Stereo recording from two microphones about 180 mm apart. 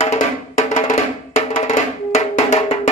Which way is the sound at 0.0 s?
40° left (ahead or behind).